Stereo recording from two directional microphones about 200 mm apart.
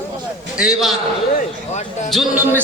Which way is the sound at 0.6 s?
Centre (ahead or behind).